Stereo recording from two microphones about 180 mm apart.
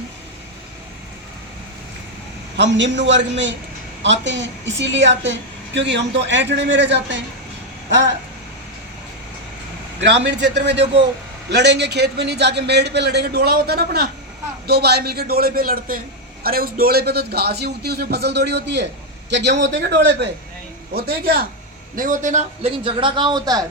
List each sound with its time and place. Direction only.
2.6 s a woman's voice: 80° right
7.9 s vehicle: 80° right
10.2 s a man's voice: 70° right (ahead or behind)
20.9 s a man's voice: 60° right (ahead or behind)
21.9 s a man's voice: 45° right (ahead or behind); by 23.6 s 20° right (ahead or behind)